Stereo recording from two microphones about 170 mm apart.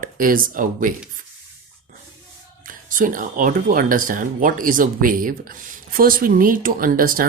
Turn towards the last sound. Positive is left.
turn(degrees=-55)  # may be behind; listen again after turning